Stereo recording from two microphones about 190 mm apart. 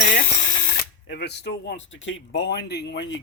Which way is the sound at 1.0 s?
60° left (ahead or behind).